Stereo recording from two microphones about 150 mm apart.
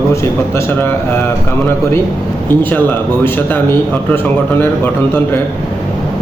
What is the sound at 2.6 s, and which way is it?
A man's voice, 15° left (ahead or behind).